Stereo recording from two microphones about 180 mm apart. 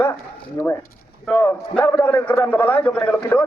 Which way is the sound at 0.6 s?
15° left (ahead or behind).